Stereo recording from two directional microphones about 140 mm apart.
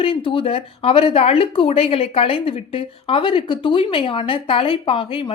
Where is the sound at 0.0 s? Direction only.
40° left (ahead or behind).